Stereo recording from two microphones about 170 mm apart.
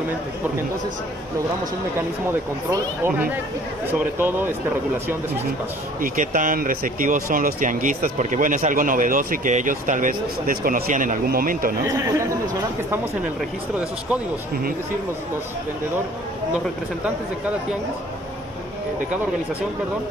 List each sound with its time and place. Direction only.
2.7 s speech: 15° right (ahead or behind)
5.9 s speech: 50° right (ahead or behind)